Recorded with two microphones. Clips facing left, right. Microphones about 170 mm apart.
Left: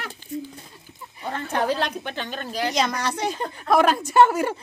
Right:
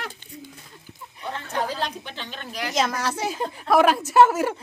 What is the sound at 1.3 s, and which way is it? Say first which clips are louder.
A woman's voice: left 4 dB; 65° left (ahead or behind).